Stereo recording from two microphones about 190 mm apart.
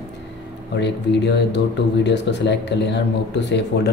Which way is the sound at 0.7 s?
65° left (ahead or behind).